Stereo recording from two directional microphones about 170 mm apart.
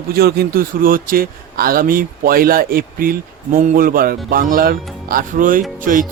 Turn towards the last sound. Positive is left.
turn(degrees=-55)  # may be behind; listen again after turning